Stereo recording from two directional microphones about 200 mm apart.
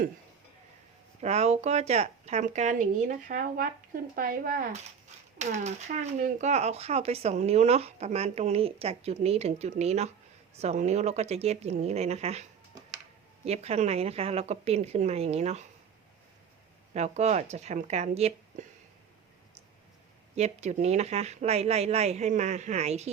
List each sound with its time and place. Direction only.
1.2 s speech: 35° right (ahead or behind)
16.9 s speech: 35° right (ahead or behind)
20.3 s speech: 35° right (ahead or behind)